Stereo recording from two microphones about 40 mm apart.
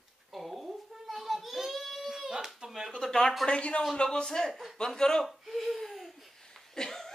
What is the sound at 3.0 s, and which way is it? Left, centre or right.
Speech, centre.